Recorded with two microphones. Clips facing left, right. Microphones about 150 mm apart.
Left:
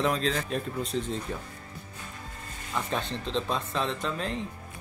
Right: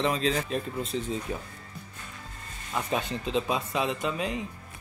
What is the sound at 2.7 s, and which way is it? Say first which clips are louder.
Speech: right 2 dB; 5° right (ahead or behind).